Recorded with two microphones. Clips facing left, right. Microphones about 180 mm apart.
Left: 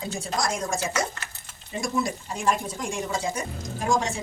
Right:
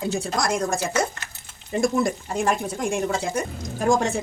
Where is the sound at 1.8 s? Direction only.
55° right (ahead or behind).